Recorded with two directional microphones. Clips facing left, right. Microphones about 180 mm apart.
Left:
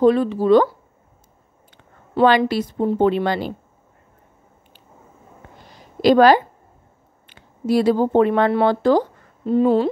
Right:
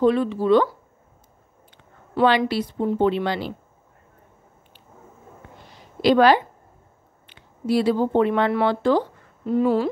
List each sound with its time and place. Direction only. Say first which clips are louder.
0.0 s speech: left 3 dB; 40° left (ahead or behind)
2.2 s a woman's voice: left 3 dB; 45° left (ahead or behind)
2.8 s speech: left 3 dB; 35° left (ahead or behind)
3.1 s a woman's voice: left 3 dB; 45° left (ahead or behind)
5.9 s a woman's voice: left 3 dB; 45° left (ahead or behind)
9.4 s speech: left 4 dB; 25° left (ahead or behind)